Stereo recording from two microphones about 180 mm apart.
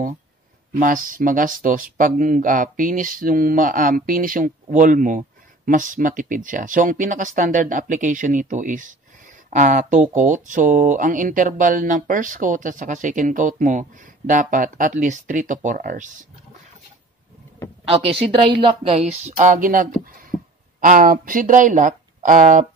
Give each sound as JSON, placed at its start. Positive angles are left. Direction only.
{"t": 0.7, "sound": "speech", "side_deg": -50}
{"t": 17.8, "sound": "a woman's voice", "side_deg": -30}